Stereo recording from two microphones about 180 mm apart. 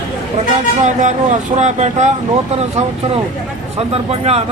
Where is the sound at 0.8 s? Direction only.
40° right (ahead or behind).